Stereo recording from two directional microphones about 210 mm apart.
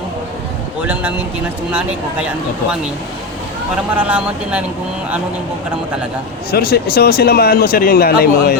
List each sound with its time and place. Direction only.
0.8 s speech: 5° right (ahead or behind)
3.9 s speech: 5° right (ahead or behind)
6.5 s speech: 50° left (ahead or behind)